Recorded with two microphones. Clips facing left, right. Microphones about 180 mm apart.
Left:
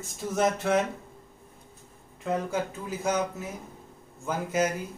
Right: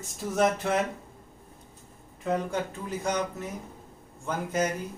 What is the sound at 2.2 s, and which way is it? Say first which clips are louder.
Speech: even; centre (ahead or behind).